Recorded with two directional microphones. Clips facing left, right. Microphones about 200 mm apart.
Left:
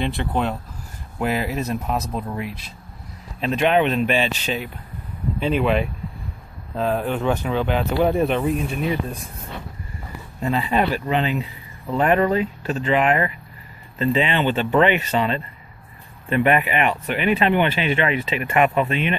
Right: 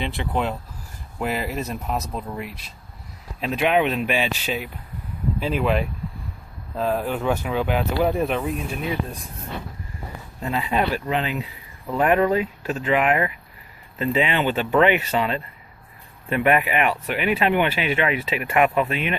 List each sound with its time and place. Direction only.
1.1 s speech: centre (ahead or behind)
10.4 s speech: 5° right (ahead or behind)